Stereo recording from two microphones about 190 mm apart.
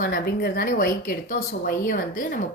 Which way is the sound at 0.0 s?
50° left (ahead or behind).